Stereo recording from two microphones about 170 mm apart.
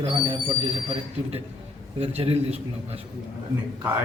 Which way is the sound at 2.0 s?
35° right (ahead or behind).